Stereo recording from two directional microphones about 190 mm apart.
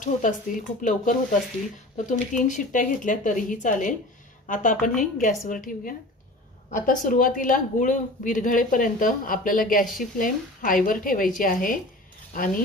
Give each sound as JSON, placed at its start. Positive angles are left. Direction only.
{"t": 0.0, "sound": "speech", "side_deg": 45}